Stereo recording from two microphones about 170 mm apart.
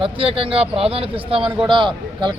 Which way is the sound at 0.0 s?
30° right (ahead or behind).